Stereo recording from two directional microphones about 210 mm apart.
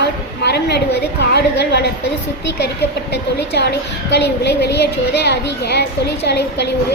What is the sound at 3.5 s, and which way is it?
A woman's voice, 50° left (ahead or behind).